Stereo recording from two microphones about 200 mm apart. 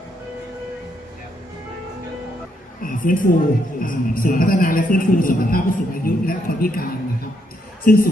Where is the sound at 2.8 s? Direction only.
45° left (ahead or behind).